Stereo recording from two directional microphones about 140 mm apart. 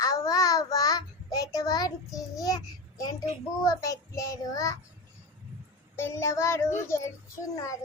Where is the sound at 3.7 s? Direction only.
25° left (ahead or behind).